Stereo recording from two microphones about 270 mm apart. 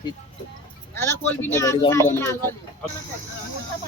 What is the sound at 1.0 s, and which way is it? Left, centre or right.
Speech, centre.